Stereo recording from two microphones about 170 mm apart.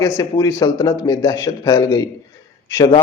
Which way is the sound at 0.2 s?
15° left (ahead or behind).